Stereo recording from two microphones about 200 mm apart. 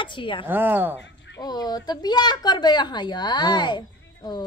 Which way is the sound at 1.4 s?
20° left (ahead or behind).